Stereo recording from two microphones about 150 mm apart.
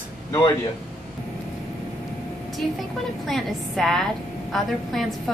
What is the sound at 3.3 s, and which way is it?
A woman's voice, centre (ahead or behind).